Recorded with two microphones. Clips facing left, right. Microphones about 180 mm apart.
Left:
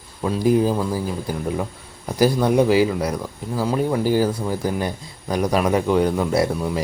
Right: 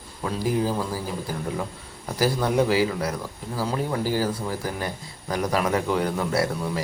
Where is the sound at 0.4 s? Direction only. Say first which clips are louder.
Left 7 dB; 20° left (ahead or behind).